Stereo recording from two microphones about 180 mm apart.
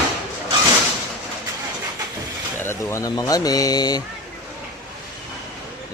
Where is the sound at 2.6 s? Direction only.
20° left (ahead or behind).